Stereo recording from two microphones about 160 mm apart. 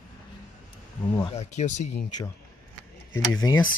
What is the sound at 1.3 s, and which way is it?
Speech, 45° left (ahead or behind).